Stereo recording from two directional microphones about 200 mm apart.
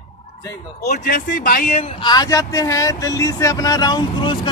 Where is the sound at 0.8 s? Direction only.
50° left (ahead or behind).